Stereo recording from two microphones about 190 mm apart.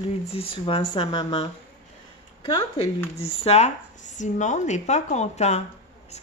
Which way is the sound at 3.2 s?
35° left (ahead or behind).